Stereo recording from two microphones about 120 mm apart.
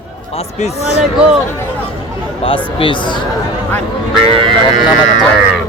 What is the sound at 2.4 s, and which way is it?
Speech, 50° left (ahead or behind).